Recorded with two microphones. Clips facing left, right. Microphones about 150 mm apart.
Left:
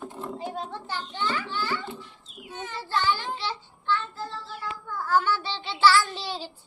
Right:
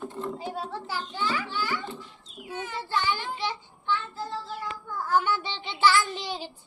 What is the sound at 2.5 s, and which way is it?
Child singing, 10° right (ahead or behind).